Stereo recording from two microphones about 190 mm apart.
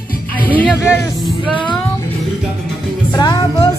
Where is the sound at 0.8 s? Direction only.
15° left (ahead or behind).